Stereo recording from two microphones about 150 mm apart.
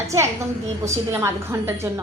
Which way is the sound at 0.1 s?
20° right (ahead or behind).